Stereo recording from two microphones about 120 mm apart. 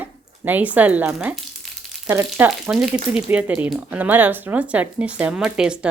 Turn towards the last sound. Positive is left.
turn(degrees=-5)  # may be behind; listen again after turning